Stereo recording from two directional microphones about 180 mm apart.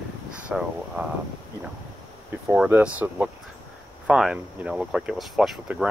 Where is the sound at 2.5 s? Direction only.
10° right (ahead or behind).